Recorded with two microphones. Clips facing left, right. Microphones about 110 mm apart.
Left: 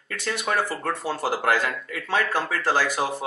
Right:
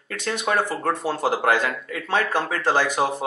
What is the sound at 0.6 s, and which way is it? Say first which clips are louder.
Speech: right 3 dB; 20° right (ahead or behind).